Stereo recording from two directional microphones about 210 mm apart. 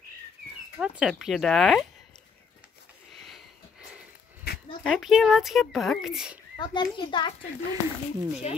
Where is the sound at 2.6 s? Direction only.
Centre (ahead or behind).